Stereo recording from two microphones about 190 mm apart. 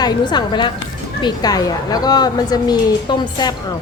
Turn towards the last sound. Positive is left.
turn(degrees=20)  # may be behind; listen again after turning